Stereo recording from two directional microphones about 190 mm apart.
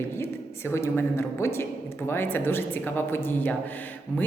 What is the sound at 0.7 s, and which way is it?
Speech, 15° left (ahead or behind).